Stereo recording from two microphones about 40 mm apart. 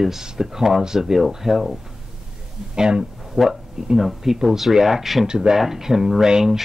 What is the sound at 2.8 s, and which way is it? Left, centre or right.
Speech, right.